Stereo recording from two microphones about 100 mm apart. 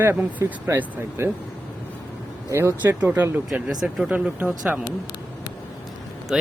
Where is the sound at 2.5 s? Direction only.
25° right (ahead or behind).